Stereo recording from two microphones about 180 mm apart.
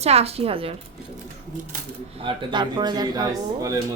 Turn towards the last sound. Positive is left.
turn(degrees=-20)  # may be behind; listen again after turning